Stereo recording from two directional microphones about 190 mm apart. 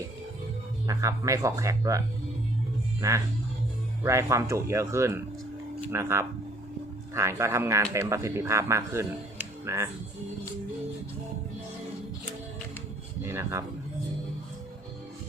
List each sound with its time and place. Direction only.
0.9 s speech: 15° right (ahead or behind)
4.0 s speech: 15° right (ahead or behind)
13.2 s speech: 15° right (ahead or behind)